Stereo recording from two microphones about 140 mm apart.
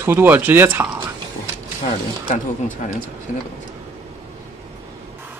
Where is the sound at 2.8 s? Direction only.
60° left (ahead or behind).